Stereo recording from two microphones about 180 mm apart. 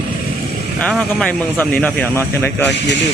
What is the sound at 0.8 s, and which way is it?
Speech, 5° left (ahead or behind).